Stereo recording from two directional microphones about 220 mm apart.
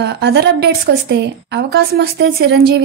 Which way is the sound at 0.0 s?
50° right (ahead or behind).